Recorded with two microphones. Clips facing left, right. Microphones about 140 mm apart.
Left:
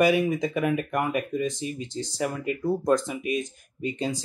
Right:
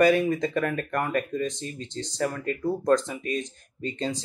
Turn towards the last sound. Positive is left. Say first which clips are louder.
# left 1 dB
turn(degrees=10)  # may be behind; listen again after turning